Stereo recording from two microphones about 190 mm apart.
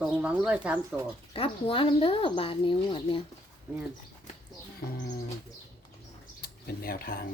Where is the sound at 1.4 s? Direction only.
30° left (ahead or behind).